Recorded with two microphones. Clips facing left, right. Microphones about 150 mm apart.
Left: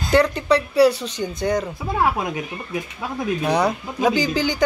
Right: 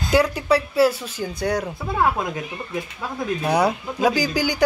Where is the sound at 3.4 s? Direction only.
10° right (ahead or behind).